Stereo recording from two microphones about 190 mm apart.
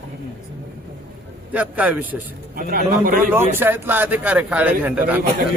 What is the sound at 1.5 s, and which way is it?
Speech, 10° right (ahead or behind).